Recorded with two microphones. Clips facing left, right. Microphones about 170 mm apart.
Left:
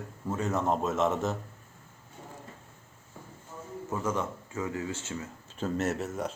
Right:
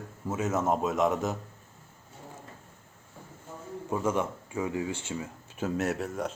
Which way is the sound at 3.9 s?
15° right (ahead or behind).